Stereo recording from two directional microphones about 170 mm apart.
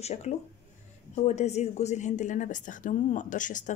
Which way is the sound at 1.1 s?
40° left (ahead or behind).